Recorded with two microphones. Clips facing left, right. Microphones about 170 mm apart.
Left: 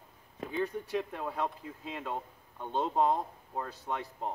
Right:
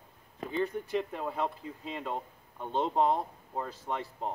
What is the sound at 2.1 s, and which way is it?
Speech, 15° right (ahead or behind).